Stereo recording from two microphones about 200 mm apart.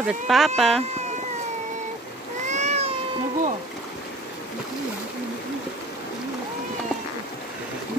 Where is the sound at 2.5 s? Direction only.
35° right (ahead or behind).